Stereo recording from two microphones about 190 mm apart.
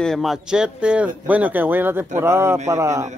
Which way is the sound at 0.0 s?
Centre (ahead or behind).